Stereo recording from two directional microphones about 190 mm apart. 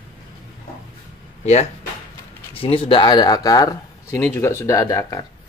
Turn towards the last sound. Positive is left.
turn(degrees=20)  # may be behind; listen again after turning